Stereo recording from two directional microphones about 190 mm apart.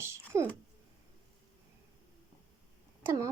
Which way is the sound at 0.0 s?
15° right (ahead or behind).